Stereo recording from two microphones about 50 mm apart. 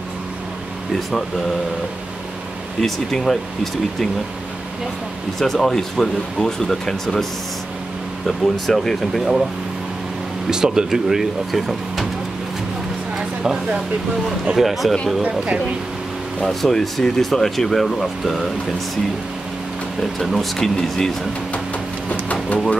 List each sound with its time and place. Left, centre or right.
2.8 s speech: centre
5.4 s speech: centre
8.3 s speech: centre
10.5 s speech: centre
14.6 s speech: centre
15.2 s speech: right
16.4 s speech: centre
20.0 s speech: centre
22.1 s a sound: left